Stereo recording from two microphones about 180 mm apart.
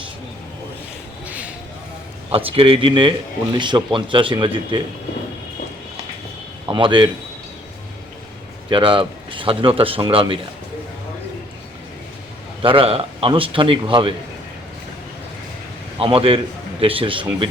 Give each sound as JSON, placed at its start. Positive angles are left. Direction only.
{"t": 1.3, "sound": "a sound", "side_deg": -5}
{"t": 2.3, "sound": "speech", "side_deg": -30}
{"t": 6.7, "sound": "speech", "side_deg": -25}
{"t": 8.7, "sound": "speech", "side_deg": -30}
{"t": 12.6, "sound": "speech", "side_deg": -30}
{"t": 16.0, "sound": "a man's voice", "side_deg": -30}